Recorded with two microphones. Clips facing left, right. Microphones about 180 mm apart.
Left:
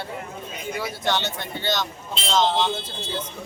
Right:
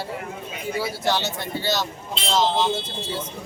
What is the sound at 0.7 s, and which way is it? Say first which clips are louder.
A man's voice: right 2 dB; 5° right (ahead or behind).